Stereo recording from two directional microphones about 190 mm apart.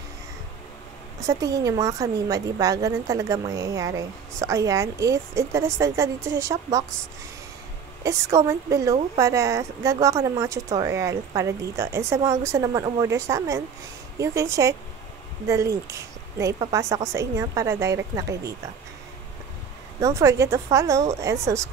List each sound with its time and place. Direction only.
1.2 s a woman's voice: 20° right (ahead or behind)
8.0 s a woman's voice: 15° right (ahead or behind)
20.0 s a woman's voice: 15° right (ahead or behind)